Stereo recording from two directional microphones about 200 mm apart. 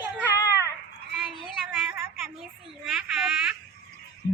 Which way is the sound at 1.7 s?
10° right (ahead or behind).